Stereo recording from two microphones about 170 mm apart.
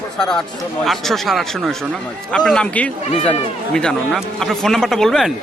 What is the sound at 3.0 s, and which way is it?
Speech, 30° left (ahead or behind).